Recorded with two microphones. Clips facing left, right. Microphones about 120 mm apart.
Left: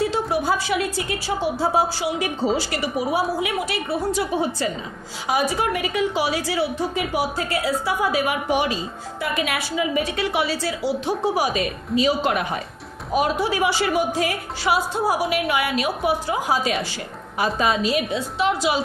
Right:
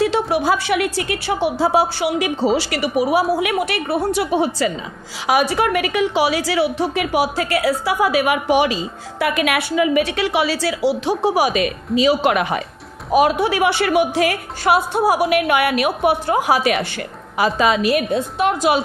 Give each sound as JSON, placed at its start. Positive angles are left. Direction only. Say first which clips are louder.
{"t": 0.0, "sound": "a woman's voice", "louder": "right 4 dB", "side_deg": -85}
{"t": 9.2, "sound": "a woman's voice", "louder": "right 6 dB", "side_deg": -75}
{"t": 13.1, "sound": "a woman's voice", "louder": "right 6 dB", "side_deg": -80}
{"t": 17.4, "sound": "a woman's voice", "louder": "right 4 dB", "side_deg": -90}